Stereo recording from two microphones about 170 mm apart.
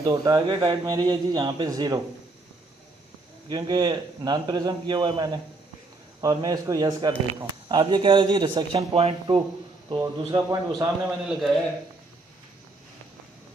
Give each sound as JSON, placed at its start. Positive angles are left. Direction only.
{"t": 0.0, "sound": "a man's voice", "side_deg": -20}
{"t": 0.3, "sound": "a man's voice", "side_deg": -35}
{"t": 3.5, "sound": "a man's voice", "side_deg": -25}
{"t": 9.9, "sound": "a man's voice", "side_deg": -20}
{"t": 11.1, "sound": "a man's voice", "side_deg": 0}